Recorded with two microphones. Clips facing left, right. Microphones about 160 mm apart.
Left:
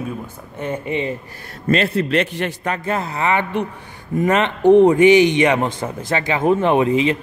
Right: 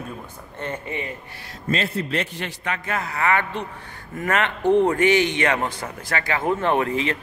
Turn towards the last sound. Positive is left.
turn(degrees=20)  # may be behind; listen again after turning